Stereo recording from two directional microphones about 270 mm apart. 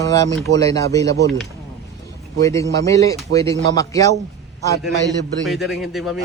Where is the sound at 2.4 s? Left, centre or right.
Centre.